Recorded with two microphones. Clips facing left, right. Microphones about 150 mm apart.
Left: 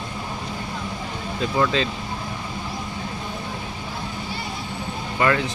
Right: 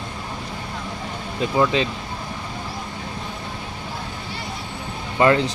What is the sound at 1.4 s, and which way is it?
Speech, 15° right (ahead or behind).